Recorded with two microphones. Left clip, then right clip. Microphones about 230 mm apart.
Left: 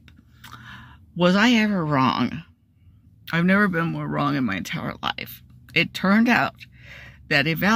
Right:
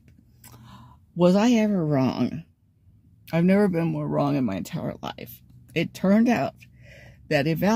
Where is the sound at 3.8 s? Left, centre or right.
Left.